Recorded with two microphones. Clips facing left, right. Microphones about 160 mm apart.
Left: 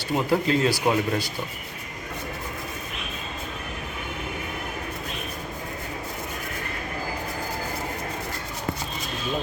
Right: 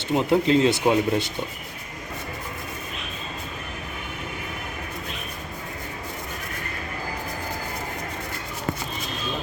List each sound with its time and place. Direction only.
0.1 s speech: 25° right (ahead or behind)